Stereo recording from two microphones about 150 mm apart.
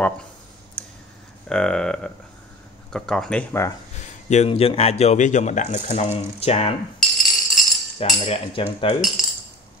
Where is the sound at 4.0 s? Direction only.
50° left (ahead or behind).